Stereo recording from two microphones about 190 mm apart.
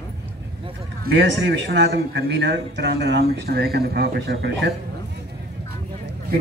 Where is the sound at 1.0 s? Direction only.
65° right (ahead or behind).